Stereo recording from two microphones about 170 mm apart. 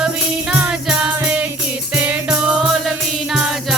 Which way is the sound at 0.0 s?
5° right (ahead or behind).